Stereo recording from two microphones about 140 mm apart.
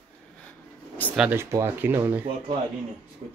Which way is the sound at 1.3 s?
15° right (ahead or behind).